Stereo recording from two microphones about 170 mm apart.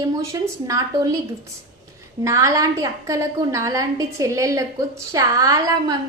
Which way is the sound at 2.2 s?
20° right (ahead or behind).